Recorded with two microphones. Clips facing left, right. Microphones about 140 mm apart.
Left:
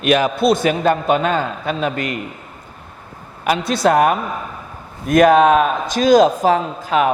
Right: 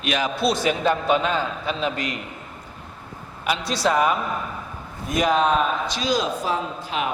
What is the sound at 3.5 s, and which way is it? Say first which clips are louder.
A man's voice: left 7 dB; 55° left (ahead or behind).